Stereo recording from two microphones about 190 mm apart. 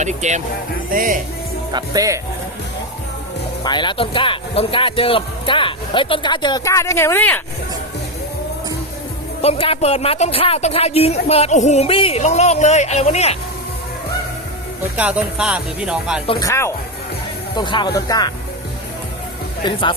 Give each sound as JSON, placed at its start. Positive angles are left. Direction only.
{"t": 0.0, "sound": "speech", "side_deg": -40}
{"t": 1.7, "sound": "speech", "side_deg": -20}
{"t": 3.6, "sound": "speech", "side_deg": 25}
{"t": 9.4, "sound": "speech", "side_deg": 30}
{"t": 14.9, "sound": "speech", "side_deg": -5}
{"t": 16.4, "sound": "speech", "side_deg": 15}
{"t": 19.6, "sound": "speech", "side_deg": 25}